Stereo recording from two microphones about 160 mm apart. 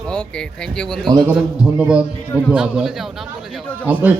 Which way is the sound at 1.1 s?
20° right (ahead or behind).